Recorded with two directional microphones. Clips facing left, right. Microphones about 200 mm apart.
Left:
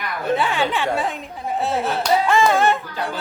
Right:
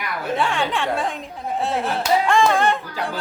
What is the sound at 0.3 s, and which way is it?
Speech, centre (ahead or behind).